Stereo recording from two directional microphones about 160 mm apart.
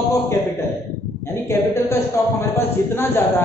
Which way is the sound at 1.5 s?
15° left (ahead or behind).